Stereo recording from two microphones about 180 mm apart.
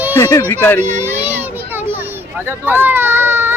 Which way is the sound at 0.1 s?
15° left (ahead or behind).